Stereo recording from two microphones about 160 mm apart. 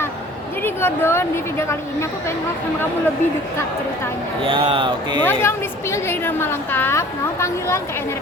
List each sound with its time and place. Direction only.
0.6 s a woman's voice: 15° left (ahead or behind)
4.4 s speech: 35° right (ahead or behind)
5.2 s a woman's voice: 15° left (ahead or behind)